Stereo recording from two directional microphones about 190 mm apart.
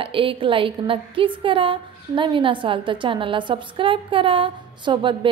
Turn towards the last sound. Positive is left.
turn(degrees=-25)  # may be behind; listen again after turning